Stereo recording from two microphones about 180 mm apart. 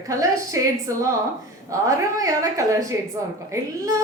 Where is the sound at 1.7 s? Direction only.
20° right (ahead or behind).